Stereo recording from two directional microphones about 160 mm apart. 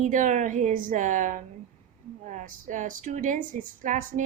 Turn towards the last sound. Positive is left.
turn(degrees=-55)  # may be behind; listen again after turning